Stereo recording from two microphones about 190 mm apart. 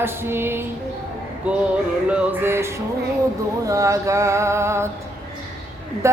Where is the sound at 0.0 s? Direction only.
10° right (ahead or behind).